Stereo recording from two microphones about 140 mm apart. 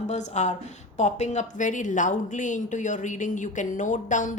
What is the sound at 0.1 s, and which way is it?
A woman's voice, 55° left (ahead or behind).